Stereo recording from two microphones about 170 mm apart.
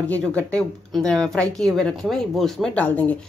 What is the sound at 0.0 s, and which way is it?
Speech, 10° left (ahead or behind).